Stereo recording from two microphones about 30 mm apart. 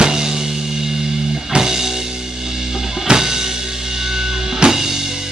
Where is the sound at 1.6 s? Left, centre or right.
Centre.